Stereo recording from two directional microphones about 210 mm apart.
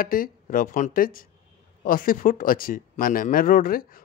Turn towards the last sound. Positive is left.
turn(degrees=45)  # may be behind; listen again after turning